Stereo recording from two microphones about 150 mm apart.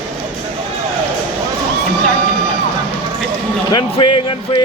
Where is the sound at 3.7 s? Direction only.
30° left (ahead or behind).